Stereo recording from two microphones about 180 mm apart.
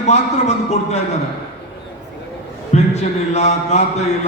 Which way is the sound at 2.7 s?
40° left (ahead or behind).